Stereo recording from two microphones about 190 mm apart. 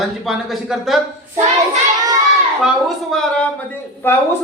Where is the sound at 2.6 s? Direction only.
Centre (ahead or behind).